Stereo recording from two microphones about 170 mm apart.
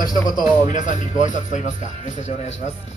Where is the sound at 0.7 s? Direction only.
45° left (ahead or behind).